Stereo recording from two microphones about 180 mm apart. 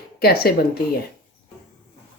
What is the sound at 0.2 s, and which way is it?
Speech, 60° left (ahead or behind).